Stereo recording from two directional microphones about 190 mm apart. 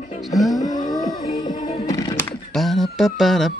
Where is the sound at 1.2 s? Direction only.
20° left (ahead or behind).